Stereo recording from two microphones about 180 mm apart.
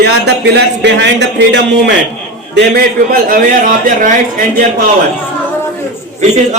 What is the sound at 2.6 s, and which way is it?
Speech, 55° right (ahead or behind).